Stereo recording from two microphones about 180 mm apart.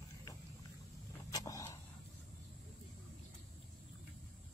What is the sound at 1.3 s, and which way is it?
Vehicle, 20° left (ahead or behind).